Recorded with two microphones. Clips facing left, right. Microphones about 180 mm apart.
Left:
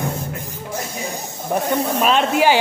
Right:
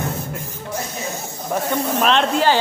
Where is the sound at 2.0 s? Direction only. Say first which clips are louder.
Even; 5° left (ahead or behind).